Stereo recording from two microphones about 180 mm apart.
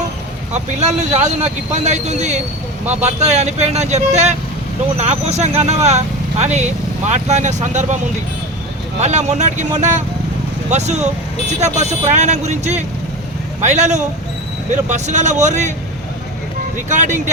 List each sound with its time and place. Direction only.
0.5 s speech: 40° right (ahead or behind)
9.0 s speech: 40° right (ahead or behind)
16.7 s speech: 40° right (ahead or behind)